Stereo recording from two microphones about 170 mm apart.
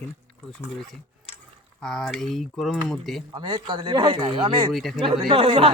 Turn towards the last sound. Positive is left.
turn(degrees=-35)  # may be behind; listen again after turning